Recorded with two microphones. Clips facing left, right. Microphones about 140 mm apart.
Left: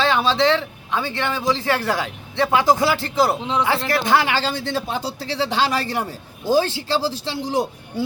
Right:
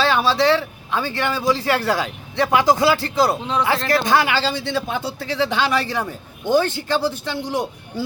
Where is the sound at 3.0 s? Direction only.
20° left (ahead or behind).